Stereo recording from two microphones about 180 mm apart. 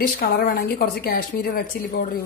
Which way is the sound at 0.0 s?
60° left (ahead or behind).